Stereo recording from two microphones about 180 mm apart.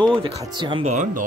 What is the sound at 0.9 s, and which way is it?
Speech, 45° right (ahead or behind).